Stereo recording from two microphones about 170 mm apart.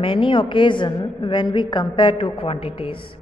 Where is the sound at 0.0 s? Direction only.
30° left (ahead or behind).